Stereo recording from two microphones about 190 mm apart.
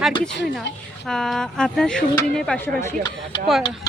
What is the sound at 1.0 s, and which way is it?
Speech, centre (ahead or behind).